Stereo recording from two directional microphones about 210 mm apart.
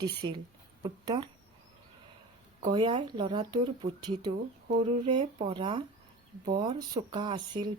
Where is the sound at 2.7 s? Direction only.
20° right (ahead or behind).